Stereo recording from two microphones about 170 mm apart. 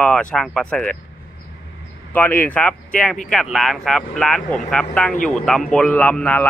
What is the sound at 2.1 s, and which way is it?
Speech, 10° left (ahead or behind).